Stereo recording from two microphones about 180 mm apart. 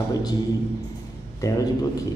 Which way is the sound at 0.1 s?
20° left (ahead or behind).